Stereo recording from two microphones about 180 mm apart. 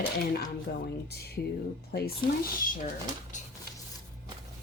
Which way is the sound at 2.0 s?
55° left (ahead or behind).